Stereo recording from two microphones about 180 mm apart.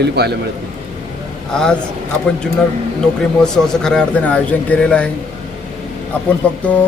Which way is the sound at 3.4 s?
5° left (ahead or behind).